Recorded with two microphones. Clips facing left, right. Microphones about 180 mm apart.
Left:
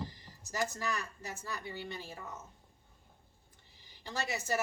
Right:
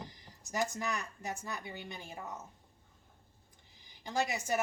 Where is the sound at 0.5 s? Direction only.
20° right (ahead or behind).